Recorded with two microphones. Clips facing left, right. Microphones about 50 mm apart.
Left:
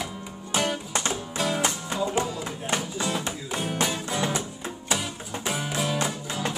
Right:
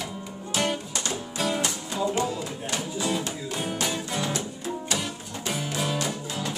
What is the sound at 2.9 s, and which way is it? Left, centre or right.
Music, centre.